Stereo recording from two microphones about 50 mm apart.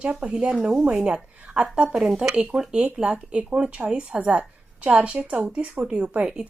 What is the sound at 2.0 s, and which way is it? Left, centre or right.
Speech, centre.